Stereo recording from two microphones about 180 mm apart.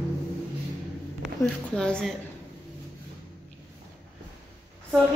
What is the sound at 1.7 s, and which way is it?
Speech, 5° left (ahead or behind).